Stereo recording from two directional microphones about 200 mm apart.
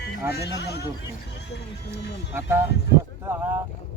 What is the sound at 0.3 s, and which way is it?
Speech, 55° left (ahead or behind).